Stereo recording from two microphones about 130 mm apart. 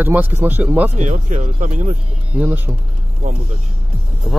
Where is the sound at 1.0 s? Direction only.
65° right (ahead or behind); by 1.9 s 80° right.